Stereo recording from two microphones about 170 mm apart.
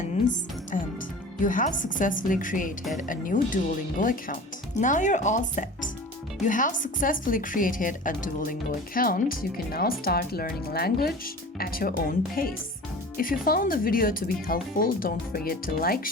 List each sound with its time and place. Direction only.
0.0 s music: 50° left (ahead or behind)
1.5 s speech: 50° left (ahead or behind)